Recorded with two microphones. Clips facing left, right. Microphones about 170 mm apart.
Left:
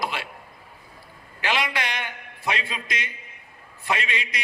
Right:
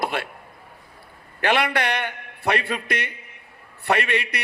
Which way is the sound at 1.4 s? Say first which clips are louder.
Right 5 dB; 60° right (ahead or behind).